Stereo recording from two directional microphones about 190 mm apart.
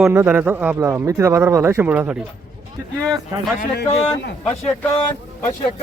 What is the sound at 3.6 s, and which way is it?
Speech, 60° left (ahead or behind).